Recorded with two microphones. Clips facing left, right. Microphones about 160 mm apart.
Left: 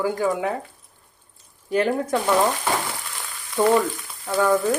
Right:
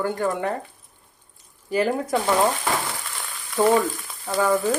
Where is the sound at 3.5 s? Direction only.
5° right (ahead or behind).